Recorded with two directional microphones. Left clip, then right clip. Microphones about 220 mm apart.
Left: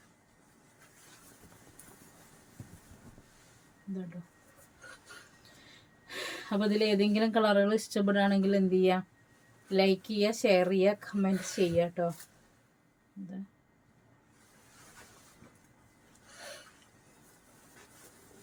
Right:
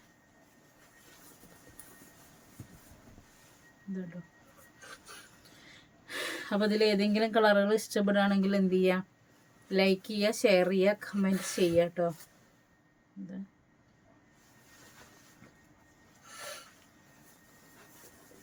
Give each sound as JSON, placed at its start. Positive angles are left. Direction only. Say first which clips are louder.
{"t": 5.6, "sound": "speech", "louder": "right 3 dB", "side_deg": -25}